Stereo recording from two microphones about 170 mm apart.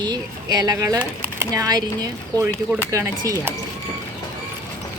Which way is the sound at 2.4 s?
10° right (ahead or behind).